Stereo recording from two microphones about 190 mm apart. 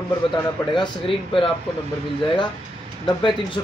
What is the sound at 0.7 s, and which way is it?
Speech, 25° left (ahead or behind).